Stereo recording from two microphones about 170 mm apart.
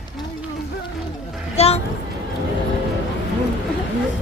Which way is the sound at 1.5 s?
35° left (ahead or behind).